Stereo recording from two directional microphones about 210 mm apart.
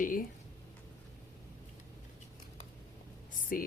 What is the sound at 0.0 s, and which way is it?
Speech, 40° left (ahead or behind).